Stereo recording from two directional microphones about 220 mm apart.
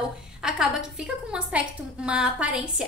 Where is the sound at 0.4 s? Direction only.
Centre (ahead or behind).